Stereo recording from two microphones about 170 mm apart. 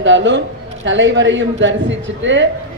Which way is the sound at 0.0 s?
90° right.